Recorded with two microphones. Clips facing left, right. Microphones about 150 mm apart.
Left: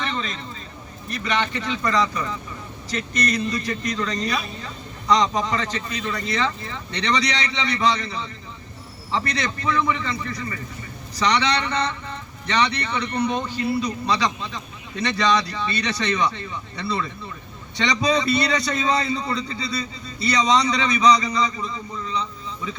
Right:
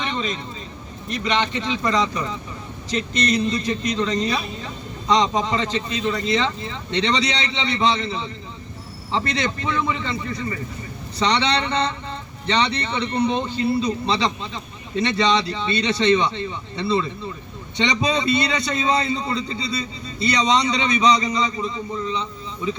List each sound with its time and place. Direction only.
0.0 s vehicle: 20° right (ahead or behind)
1.1 s speech: 20° right (ahead or behind)